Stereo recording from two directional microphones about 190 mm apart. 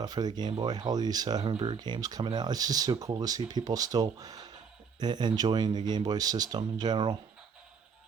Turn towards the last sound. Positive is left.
turn(degrees=-20)  # may be behind; listen again after turning